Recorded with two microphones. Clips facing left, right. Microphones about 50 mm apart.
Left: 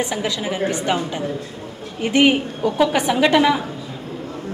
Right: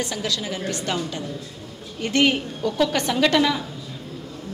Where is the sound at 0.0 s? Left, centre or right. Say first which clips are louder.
Left 4 dB; left.